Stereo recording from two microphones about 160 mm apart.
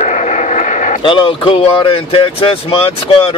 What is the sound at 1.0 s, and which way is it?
Speech, 30° left (ahead or behind).